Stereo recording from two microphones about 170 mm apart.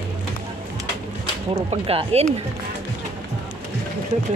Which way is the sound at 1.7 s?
35° right (ahead or behind).